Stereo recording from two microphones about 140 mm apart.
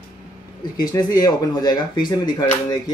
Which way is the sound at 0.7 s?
30° left (ahead or behind).